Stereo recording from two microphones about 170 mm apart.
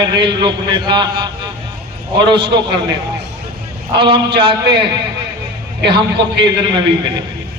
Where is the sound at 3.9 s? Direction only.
30° right (ahead or behind).